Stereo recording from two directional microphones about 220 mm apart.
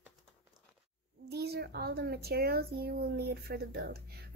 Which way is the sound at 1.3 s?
45° right (ahead or behind).